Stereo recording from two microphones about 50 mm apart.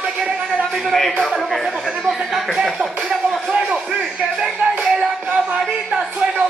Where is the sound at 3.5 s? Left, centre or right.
Centre.